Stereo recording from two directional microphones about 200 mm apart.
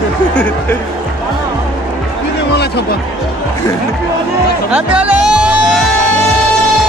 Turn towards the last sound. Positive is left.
turn(degrees=-5)  # may be behind; listen again after turning